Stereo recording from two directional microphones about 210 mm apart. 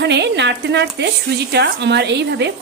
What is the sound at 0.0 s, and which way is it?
A woman's voice, 55° right (ahead or behind).